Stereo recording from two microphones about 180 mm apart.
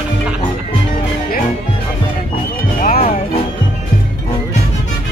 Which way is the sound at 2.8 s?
40° left (ahead or behind).